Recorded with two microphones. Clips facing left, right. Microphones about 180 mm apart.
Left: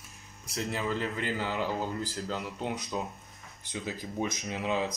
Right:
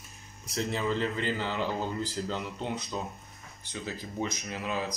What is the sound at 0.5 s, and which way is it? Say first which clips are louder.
Speech: right 2 dB; 5° left (ahead or behind).